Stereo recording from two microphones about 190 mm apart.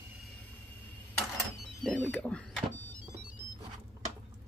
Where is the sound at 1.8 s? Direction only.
5° left (ahead or behind).